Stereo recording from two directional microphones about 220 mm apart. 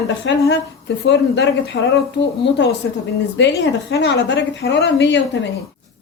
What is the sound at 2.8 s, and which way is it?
A woman's voice, 60° left (ahead or behind).